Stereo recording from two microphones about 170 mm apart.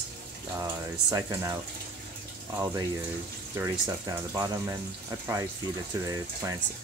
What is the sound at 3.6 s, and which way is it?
Speech, 15° right (ahead or behind).